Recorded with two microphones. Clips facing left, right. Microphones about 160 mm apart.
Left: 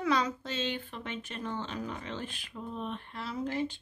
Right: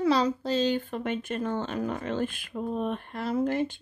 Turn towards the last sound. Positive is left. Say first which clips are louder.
# right 7 dB
turn(degrees=-55)  # may be behind; listen again after turning